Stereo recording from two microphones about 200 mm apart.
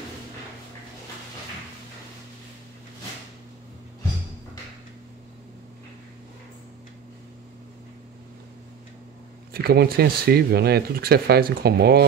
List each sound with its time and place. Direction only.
9.5 s speech: 50° right (ahead or behind)